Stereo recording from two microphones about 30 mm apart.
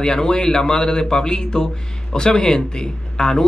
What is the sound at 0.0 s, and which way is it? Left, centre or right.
Speech, left.